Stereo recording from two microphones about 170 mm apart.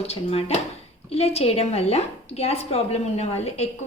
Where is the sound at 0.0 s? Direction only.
35° left (ahead or behind).